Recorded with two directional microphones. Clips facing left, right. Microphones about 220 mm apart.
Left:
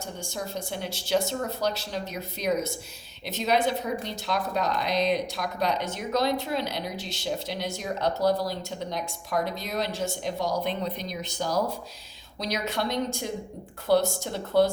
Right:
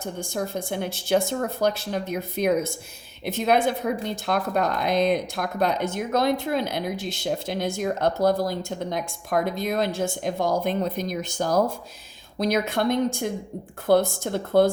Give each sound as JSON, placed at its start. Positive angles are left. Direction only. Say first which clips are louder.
{"t": 0.0, "sound": "speech", "louder": "right 6 dB", "side_deg": -55}